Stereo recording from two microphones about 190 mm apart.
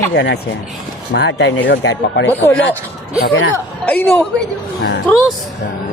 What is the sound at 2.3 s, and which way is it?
Speech, 10° left (ahead or behind).